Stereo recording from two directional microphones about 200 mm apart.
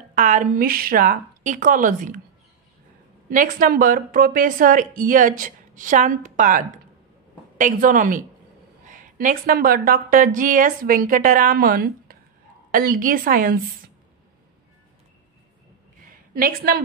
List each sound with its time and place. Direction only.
0.1 s a woman's voice: 40° right (ahead or behind)
3.3 s a woman's voice: 45° right (ahead or behind)
16.3 s a woman's voice: 50° right (ahead or behind)